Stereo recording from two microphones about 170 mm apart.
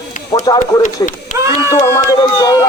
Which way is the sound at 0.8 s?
45° left (ahead or behind).